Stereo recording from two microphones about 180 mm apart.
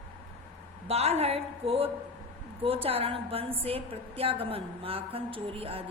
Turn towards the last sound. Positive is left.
turn(degrees=-30)  # may be behind; listen again after turning